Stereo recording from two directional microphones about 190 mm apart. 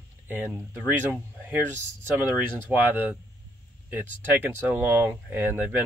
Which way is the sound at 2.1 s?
10° right (ahead or behind).